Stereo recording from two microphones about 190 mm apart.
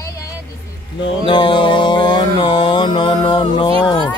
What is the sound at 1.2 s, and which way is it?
Mantra, 25° left (ahead or behind).